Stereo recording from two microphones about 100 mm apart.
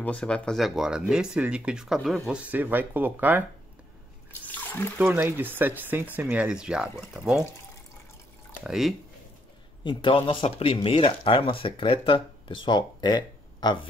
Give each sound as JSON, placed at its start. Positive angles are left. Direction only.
{"t": 0.0, "sound": "speech", "side_deg": 10}
{"t": 0.6, "sound": "speech", "side_deg": -5}
{"t": 5.1, "sound": "speech", "side_deg": -20}
{"t": 8.6, "sound": "speech", "side_deg": -5}
{"t": 9.8, "sound": "speech", "side_deg": 60}